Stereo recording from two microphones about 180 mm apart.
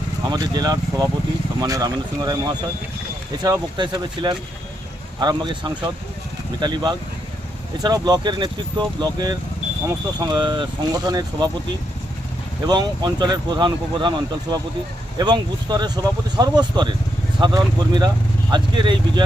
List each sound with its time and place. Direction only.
0.3 s speech: 20° right (ahead or behind)
12.6 s speech: 25° right (ahead or behind)